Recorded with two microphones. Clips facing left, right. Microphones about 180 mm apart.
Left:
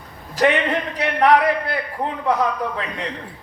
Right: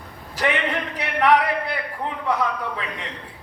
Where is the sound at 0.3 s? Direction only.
40° left (ahead or behind).